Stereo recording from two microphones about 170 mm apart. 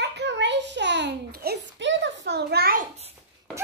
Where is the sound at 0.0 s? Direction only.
90° right; by 2.8 s 65° right (ahead or behind).